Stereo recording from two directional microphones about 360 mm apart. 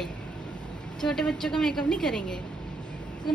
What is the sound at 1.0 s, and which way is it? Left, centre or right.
Speech, centre.